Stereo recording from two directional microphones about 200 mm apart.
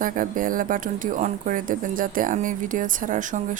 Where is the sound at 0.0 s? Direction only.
45° right (ahead or behind).